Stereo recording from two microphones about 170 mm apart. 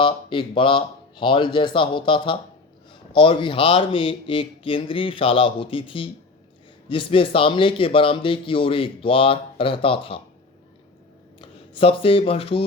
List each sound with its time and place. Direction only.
0.0 s a man's voice: 30° left (ahead or behind)
11.3 s speech: 30° left (ahead or behind)